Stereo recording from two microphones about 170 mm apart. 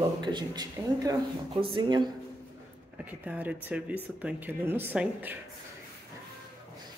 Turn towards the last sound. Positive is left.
turn(degrees=-10)  # may be behind; listen again after turning